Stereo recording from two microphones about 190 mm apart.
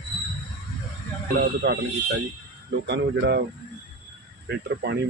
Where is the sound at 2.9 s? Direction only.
65° right (ahead or behind).